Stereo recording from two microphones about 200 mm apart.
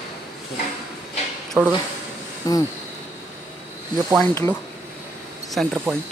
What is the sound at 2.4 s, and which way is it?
Speech, 15° left (ahead or behind).